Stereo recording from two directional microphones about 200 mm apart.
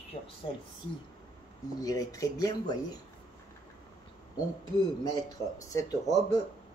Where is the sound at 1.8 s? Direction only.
15° left (ahead or behind).